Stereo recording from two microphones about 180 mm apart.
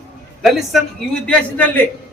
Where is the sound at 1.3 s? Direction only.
10° left (ahead or behind).